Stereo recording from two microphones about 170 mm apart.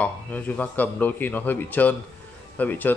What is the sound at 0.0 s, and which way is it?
Speech, 10° left (ahead or behind).